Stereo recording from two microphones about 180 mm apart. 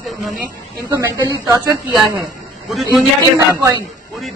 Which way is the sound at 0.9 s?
20° right (ahead or behind).